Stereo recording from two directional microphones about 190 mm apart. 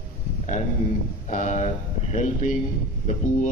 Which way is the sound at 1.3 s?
40° left (ahead or behind).